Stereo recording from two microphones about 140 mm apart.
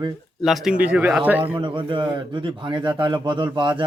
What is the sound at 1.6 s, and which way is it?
A man's voice, 35° right (ahead or behind).